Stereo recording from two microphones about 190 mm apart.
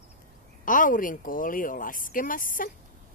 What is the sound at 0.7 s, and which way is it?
Speech, 45° left (ahead or behind).